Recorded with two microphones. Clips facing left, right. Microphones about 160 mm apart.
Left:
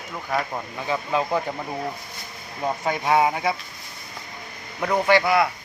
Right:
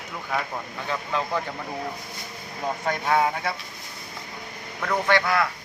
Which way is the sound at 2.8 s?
10° left (ahead or behind).